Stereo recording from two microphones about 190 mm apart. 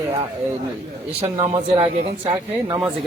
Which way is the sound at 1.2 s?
30° right (ahead or behind).